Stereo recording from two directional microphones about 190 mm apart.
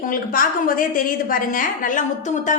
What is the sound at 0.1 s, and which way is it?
A woman's voice, 45° left (ahead or behind).